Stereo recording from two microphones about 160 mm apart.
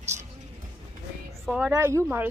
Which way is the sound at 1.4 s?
5° right (ahead or behind).